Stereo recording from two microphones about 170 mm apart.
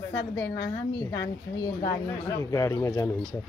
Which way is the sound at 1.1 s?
20° left (ahead or behind).